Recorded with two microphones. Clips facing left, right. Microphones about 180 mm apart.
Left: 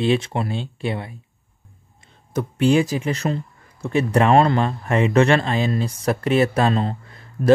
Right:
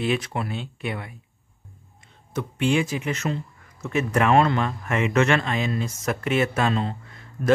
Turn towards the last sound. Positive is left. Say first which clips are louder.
# left 5 dB
turn(degrees=35)  # may be behind; listen again after turning